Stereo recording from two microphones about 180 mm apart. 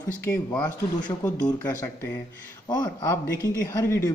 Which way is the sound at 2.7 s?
25° left (ahead or behind).